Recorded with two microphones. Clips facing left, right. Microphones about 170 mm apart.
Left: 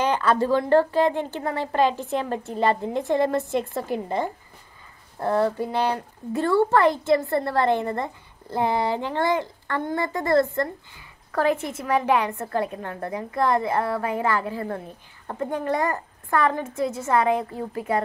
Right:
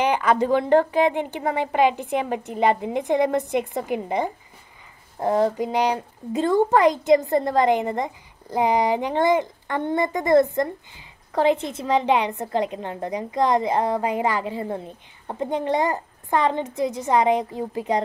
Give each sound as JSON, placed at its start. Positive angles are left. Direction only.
{"t": 0.0, "sound": "speech", "side_deg": -15}